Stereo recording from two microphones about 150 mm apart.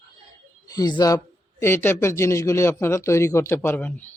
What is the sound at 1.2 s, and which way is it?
A man's voice, 15° left (ahead or behind).